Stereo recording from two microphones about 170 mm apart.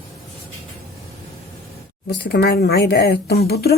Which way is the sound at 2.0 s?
75° left (ahead or behind).